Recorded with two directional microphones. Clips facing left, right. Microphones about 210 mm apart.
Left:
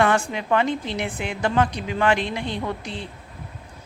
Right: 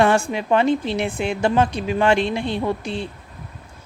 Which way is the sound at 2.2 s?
15° left (ahead or behind).